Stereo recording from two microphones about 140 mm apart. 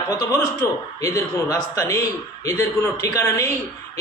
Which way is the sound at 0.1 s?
25° left (ahead or behind).